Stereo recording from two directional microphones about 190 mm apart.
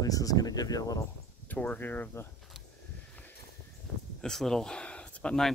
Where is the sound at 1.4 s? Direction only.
10° left (ahead or behind).